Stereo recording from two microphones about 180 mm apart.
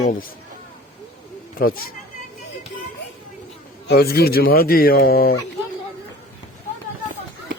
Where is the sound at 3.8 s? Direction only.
60° left (ahead or behind).